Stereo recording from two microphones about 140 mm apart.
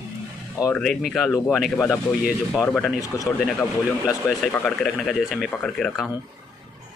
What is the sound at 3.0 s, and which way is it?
Speech, 25° left (ahead or behind).